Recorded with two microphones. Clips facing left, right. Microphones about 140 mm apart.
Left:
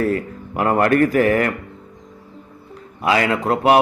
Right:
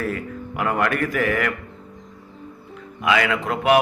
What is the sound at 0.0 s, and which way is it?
A man's voice, 35° left (ahead or behind).